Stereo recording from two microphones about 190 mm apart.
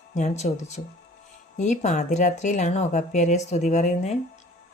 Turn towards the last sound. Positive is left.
turn(degrees=40)  # may be behind; listen again after turning